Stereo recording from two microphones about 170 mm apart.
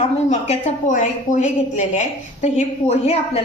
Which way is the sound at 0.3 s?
45° left (ahead or behind).